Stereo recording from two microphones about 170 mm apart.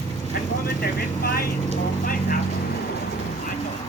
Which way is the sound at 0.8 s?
65° left (ahead or behind).